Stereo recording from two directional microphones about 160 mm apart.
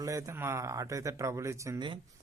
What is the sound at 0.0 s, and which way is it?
Speech, 20° right (ahead or behind).